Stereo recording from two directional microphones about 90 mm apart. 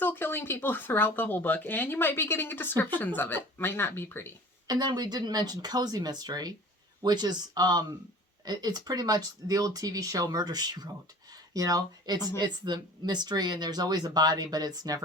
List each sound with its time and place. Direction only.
0.0 s speech: 25° left (ahead or behind)
4.6 s speech: 50° right (ahead or behind)